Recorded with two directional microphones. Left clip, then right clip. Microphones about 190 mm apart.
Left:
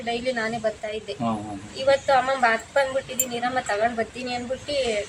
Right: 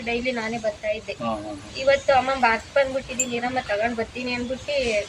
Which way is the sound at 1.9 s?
15° left (ahead or behind).